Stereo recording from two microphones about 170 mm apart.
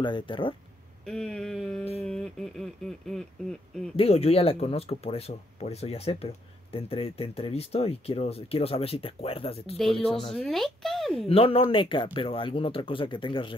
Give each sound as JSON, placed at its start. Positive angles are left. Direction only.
{"t": 0.0, "sound": "speech", "side_deg": 30}
{"t": 1.0, "sound": "speech", "side_deg": 5}
{"t": 3.9, "sound": "speech", "side_deg": 35}
{"t": 9.8, "sound": "speech", "side_deg": 0}
{"t": 11.2, "sound": "speech", "side_deg": 35}